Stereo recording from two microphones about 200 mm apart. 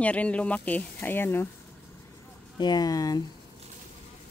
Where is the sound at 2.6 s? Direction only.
20° left (ahead or behind).